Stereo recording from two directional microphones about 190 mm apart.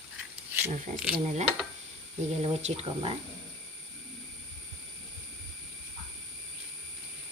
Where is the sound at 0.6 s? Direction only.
5° right (ahead or behind).